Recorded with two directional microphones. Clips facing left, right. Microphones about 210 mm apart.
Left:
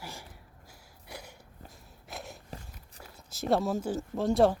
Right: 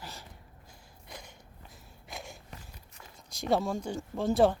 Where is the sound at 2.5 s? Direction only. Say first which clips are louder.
Left 4 dB; 35° left (ahead or behind).